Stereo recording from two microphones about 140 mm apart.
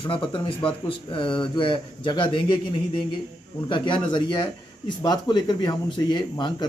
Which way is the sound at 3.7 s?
35° left (ahead or behind).